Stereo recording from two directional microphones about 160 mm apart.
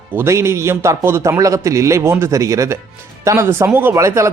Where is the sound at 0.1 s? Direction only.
15° right (ahead or behind).